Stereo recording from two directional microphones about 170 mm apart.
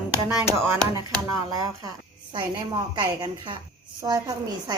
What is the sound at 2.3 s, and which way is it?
A woman's voice, 25° right (ahead or behind).